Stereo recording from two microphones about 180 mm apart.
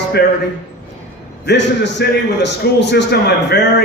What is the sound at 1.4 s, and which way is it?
A man's voice, 70° left (ahead or behind).